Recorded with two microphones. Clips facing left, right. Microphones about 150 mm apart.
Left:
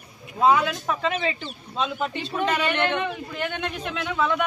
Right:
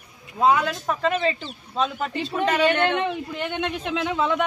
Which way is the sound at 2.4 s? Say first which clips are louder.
Right 3 dB; 25° right (ahead or behind).